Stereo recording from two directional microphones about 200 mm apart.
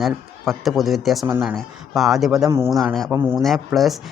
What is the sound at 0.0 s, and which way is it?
Speech, centre (ahead or behind).